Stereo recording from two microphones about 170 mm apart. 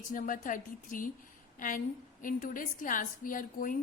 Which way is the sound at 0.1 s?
50° left (ahead or behind).